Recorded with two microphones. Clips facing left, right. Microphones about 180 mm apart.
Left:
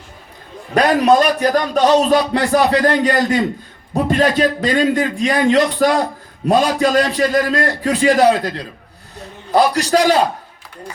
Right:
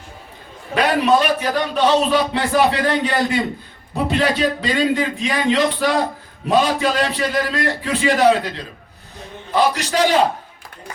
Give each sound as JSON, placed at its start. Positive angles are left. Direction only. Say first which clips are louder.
{"t": 0.7, "sound": "a man's voice", "louder": "left 3 dB", "side_deg": 40}